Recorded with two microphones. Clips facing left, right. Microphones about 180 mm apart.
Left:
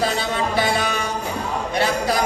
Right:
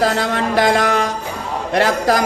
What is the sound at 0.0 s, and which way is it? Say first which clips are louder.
Music: right 4 dB; 85° right.